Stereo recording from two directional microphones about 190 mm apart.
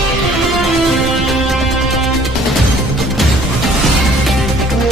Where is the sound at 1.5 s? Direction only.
Centre (ahead or behind).